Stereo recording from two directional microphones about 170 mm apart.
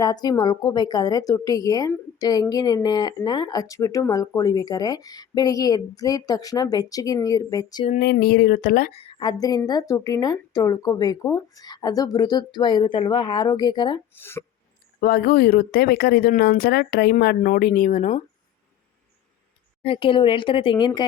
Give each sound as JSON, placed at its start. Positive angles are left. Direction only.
{"t": 0.0, "sound": "speech", "side_deg": 25}
{"t": 7.9, "sound": "speech", "side_deg": 65}
{"t": 8.9, "sound": "speech", "side_deg": 35}
{"t": 14.2, "sound": "speech", "side_deg": 15}
{"t": 15.0, "sound": "speech", "side_deg": 65}
{"t": 19.8, "sound": "speech", "side_deg": 30}